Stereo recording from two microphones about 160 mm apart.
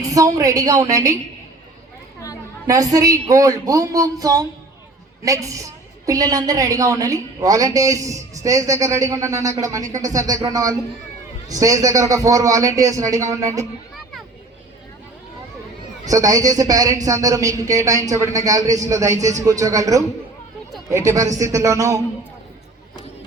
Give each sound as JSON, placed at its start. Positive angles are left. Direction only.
{"t": 0.0, "sound": "a woman's voice", "side_deg": -20}
{"t": 2.6, "sound": "a woman's voice", "side_deg": -20}
{"t": 16.0, "sound": "a woman's voice", "side_deg": -20}